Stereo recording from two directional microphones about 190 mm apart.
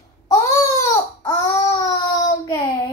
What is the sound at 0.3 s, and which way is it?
Baby cry, 15° left (ahead or behind).